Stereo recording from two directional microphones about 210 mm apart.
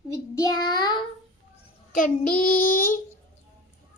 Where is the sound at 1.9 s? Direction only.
40° left (ahead or behind).